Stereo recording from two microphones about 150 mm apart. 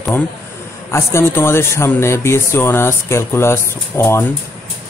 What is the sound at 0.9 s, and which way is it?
Speech, 15° left (ahead or behind).